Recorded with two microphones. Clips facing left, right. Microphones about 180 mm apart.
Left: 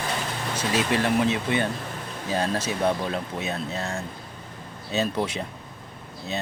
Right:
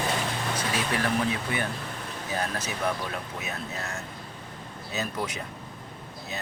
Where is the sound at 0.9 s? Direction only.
25° left (ahead or behind).